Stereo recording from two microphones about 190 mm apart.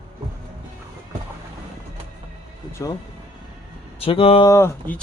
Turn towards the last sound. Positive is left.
turn(degrees=10)  # may be behind; listen again after turning